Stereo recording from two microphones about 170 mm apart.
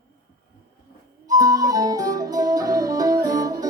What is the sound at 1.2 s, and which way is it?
Music, 20° right (ahead or behind).